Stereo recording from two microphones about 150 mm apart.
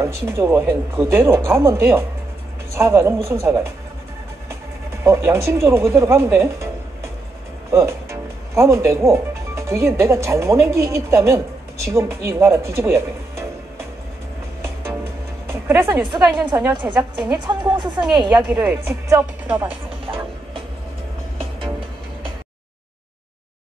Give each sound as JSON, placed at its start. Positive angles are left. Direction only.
{"t": 0.0, "sound": "speech", "side_deg": -15}
{"t": 5.0, "sound": "speech", "side_deg": -20}
{"t": 7.7, "sound": "speech", "side_deg": -20}
{"t": 15.7, "sound": "speech", "side_deg": -15}
{"t": 16.7, "sound": "a woman's voice", "side_deg": -30}
{"t": 18.5, "sound": "speech", "side_deg": -10}